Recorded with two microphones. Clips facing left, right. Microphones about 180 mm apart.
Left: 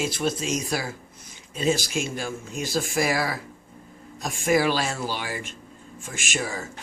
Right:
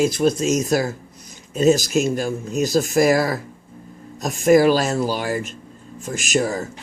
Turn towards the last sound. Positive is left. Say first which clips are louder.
# right 9 dB
turn(degrees=-40)  # may be behind; listen again after turning